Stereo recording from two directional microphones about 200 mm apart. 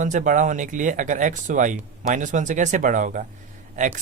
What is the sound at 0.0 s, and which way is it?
Speech, 40° right (ahead or behind).